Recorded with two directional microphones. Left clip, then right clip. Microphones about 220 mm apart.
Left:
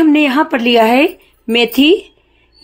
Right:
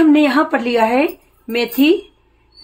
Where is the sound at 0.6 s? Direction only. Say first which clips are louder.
Left 5 dB; 35° left (ahead or behind).